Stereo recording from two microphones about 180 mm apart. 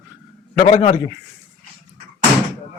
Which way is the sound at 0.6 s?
45° left (ahead or behind).